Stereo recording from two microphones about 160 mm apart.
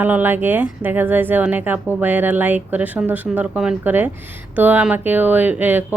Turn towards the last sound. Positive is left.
turn(degrees=-10)  # may be behind; listen again after turning